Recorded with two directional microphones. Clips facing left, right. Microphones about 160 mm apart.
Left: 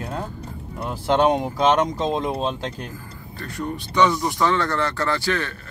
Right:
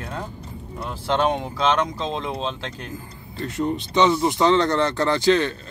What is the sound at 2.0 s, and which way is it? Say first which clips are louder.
Speech: left 4 dB; 45° left (ahead or behind).